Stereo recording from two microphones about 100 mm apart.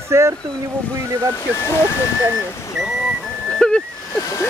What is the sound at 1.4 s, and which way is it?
Speech, 25° left (ahead or behind).